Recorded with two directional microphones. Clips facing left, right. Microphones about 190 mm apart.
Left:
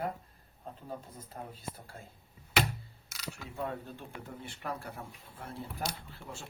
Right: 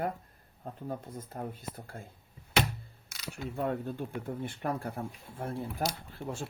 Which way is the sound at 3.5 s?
50° right (ahead or behind).